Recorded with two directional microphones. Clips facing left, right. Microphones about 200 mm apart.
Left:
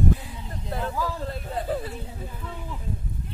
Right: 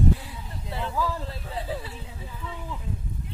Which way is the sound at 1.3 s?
45° left (ahead or behind).